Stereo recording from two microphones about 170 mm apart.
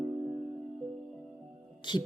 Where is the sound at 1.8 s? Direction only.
25° left (ahead or behind).